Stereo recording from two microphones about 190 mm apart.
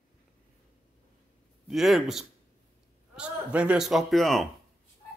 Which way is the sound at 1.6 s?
Centre (ahead or behind).